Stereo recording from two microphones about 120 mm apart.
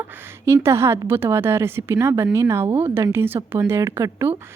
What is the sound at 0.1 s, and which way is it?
A woman's voice, 20° right (ahead or behind).